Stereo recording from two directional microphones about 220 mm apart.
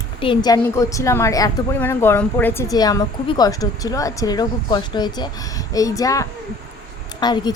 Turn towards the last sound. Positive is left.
turn(degrees=20)  # may be behind; listen again after turning